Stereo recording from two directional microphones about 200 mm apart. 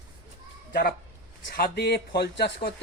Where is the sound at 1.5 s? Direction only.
50° left (ahead or behind).